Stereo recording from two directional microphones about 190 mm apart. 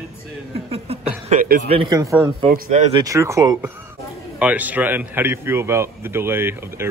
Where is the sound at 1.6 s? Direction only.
30° right (ahead or behind).